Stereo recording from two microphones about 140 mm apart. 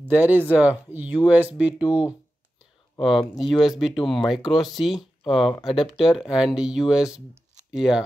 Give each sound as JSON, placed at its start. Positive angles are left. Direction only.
{"t": 0.1, "sound": "speech", "side_deg": -10}